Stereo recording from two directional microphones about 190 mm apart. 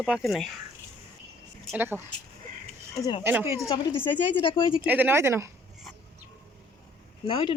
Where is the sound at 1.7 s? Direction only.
10° right (ahead or behind).